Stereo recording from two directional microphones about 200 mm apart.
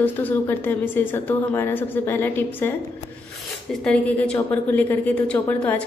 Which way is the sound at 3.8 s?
5° left (ahead or behind).